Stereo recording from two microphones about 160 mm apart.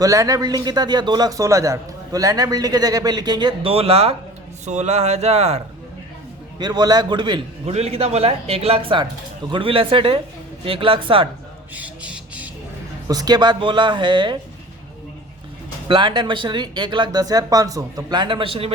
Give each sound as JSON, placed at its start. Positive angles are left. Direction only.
{"t": 0.0, "sound": "a man's voice", "side_deg": -20}
{"t": 6.6, "sound": "a man's voice", "side_deg": -25}
{"t": 7.7, "sound": "speech", "side_deg": -40}
{"t": 11.7, "sound": "a sound", "side_deg": -10}
{"t": 13.1, "sound": "a man's voice", "side_deg": -25}
{"t": 15.9, "sound": "a man's voice", "side_deg": -30}